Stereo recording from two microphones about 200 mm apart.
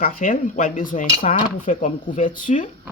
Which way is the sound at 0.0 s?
40° left (ahead or behind).